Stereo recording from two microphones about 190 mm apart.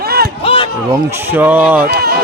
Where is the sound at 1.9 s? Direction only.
55° right (ahead or behind).